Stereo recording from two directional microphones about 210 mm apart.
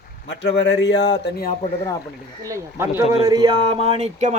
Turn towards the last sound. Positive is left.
turn(degrees=-30)  # may be behind; listen again after turning